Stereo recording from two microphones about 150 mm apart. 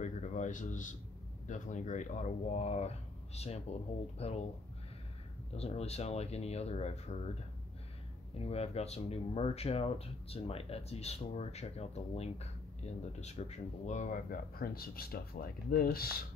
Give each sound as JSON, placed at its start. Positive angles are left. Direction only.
{"t": 0.0, "sound": "speech", "side_deg": 55}
{"t": 5.6, "sound": "speech", "side_deg": 45}
{"t": 8.4, "sound": "speech", "side_deg": 45}